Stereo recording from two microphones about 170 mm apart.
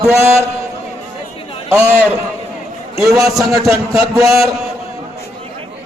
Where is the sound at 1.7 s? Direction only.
10° right (ahead or behind).